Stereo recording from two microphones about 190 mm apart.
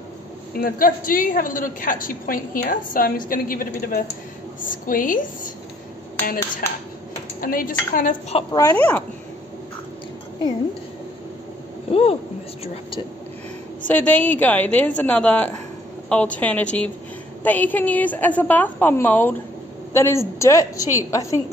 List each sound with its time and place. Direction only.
0.6 s a woman's voice: 50° left (ahead or behind)
7.3 s a woman's voice: 45° left (ahead or behind)
8.5 s a woman's voice: 15° left (ahead or behind)
11.9 s speech: 30° left (ahead or behind)
13.8 s a woman's voice: 10° left (ahead or behind)